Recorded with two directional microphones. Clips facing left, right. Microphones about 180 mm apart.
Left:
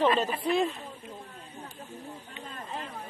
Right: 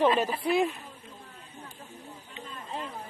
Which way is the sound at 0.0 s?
10° right (ahead or behind).